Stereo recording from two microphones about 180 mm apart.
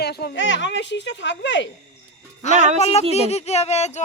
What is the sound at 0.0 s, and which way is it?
Speech, 65° left (ahead or behind).